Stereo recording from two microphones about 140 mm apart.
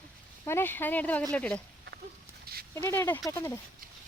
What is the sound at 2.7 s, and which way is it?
Speech, 20° left (ahead or behind).